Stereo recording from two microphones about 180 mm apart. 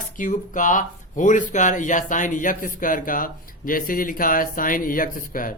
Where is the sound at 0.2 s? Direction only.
45° left (ahead or behind).